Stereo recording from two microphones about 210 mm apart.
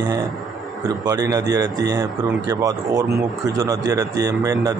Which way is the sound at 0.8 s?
15° right (ahead or behind).